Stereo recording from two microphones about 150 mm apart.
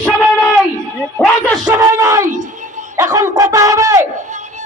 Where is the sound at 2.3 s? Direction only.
55° right (ahead or behind).